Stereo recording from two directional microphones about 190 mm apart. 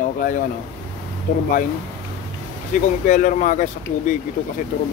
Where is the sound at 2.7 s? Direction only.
40° left (ahead or behind).